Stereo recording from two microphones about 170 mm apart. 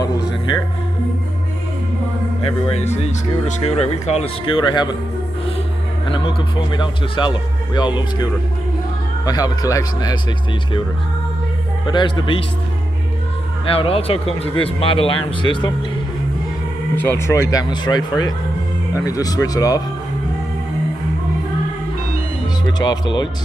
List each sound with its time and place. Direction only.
2.4 s speech: 40° left (ahead or behind)
6.1 s speech: 25° left (ahead or behind)
11.9 s speech: 30° left (ahead or behind)
13.7 s speech: 35° left (ahead or behind)
16.9 s speech: 10° left (ahead or behind)
22.7 s speech: 25° left (ahead or behind)